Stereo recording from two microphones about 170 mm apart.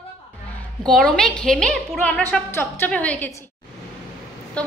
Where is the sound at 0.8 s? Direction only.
5° left (ahead or behind).